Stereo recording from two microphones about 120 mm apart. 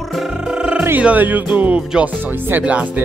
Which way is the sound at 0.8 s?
15° right (ahead or behind).